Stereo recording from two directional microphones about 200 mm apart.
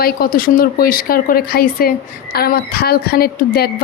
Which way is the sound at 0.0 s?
45° left (ahead or behind).